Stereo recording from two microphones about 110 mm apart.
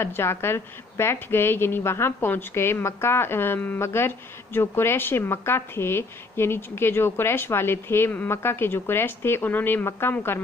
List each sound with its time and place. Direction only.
0.0 s a woman's voice: 20° left (ahead or behind)